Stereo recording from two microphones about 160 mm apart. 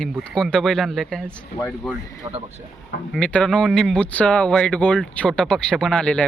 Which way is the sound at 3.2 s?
5° left (ahead or behind).